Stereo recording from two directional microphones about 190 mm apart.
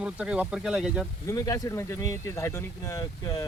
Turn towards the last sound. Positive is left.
turn(degrees=20)  # may be behind; listen again after turning